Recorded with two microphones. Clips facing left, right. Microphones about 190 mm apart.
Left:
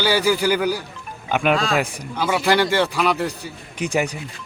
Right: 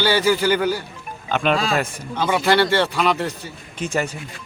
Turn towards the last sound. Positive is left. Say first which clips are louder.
# left 2 dB
turn(degrees=15)  # may be behind; listen again after turning